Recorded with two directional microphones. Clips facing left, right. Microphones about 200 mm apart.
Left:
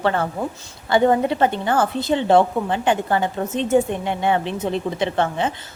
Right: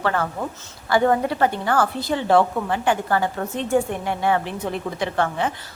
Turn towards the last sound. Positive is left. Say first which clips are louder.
# left 2 dB
turn(degrees=25)  # may be behind; listen again after turning